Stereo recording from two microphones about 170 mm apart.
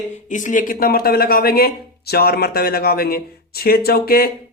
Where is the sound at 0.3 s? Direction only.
50° left (ahead or behind).